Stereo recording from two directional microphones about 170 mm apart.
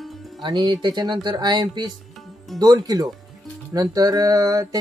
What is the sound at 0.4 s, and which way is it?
Speech, 25° right (ahead or behind).